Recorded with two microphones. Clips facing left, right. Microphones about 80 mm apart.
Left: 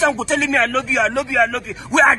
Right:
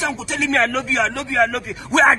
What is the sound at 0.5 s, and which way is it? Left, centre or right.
Speech, centre.